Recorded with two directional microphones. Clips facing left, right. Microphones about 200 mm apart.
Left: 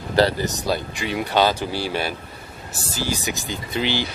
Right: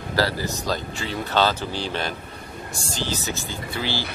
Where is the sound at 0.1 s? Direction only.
20° left (ahead or behind).